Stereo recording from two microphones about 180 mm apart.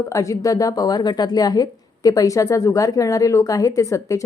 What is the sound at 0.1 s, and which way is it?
A woman's voice, 15° left (ahead or behind).